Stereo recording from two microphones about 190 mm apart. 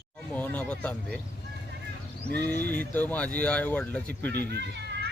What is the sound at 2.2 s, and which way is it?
Speech, 60° right (ahead or behind).